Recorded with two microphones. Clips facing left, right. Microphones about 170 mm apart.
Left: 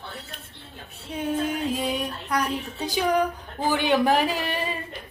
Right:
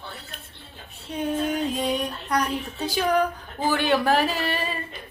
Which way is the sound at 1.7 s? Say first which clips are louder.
Right 2 dB; 5° left (ahead or behind).